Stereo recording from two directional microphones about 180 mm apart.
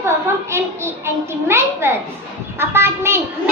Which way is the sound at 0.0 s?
15° right (ahead or behind).